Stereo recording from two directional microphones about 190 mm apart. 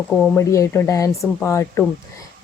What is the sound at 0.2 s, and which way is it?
Speech, 15° left (ahead or behind).